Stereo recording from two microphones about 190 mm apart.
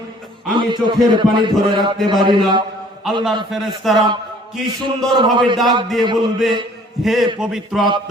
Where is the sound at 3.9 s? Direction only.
25° right (ahead or behind).